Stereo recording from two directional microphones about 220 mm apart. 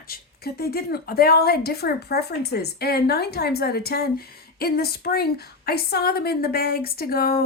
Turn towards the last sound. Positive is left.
turn(degrees=40)  # may be behind; listen again after turning